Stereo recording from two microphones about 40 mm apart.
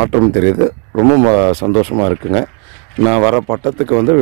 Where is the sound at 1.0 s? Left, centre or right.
Centre.